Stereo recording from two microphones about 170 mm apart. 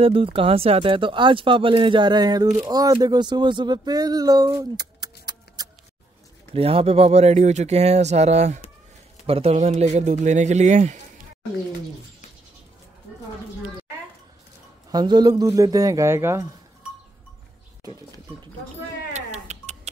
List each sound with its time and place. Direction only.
0.0 s speech: 30° right (ahead or behind)
6.5 s speech: 35° right (ahead or behind)
14.9 s speech: 25° right (ahead or behind)
19.1 s music: 40° right (ahead or behind)